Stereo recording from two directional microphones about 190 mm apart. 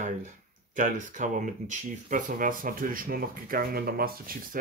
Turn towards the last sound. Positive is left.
turn(degrees=-50)  # may be behind; listen again after turning